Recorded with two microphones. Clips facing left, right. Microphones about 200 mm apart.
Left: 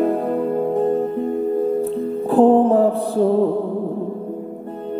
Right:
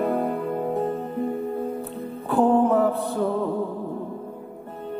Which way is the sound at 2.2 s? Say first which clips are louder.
Left 6 dB; 30° left (ahead or behind).